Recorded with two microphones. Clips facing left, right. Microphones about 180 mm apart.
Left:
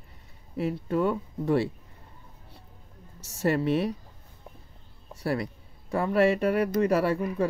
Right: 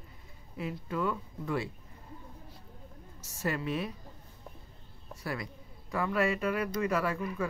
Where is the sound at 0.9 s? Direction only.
30° left (ahead or behind).